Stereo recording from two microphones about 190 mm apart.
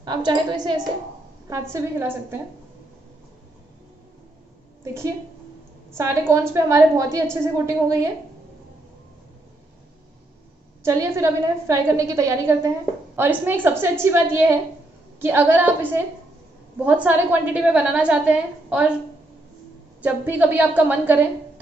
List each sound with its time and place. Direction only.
0.0 s a woman's voice: 25° right (ahead or behind)
5.9 s a woman's voice: 15° right (ahead or behind)
10.8 s a woman's voice: 15° right (ahead or behind)
20.0 s a woman's voice: 10° right (ahead or behind)